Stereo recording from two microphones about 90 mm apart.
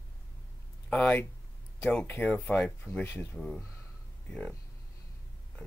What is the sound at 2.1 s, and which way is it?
Speech, 15° left (ahead or behind).